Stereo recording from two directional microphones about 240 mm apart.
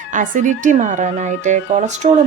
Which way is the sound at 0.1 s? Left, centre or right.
Right.